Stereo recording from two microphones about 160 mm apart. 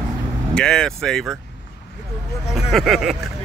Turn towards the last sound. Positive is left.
turn(degrees=0)  # may be behind; listen again after turning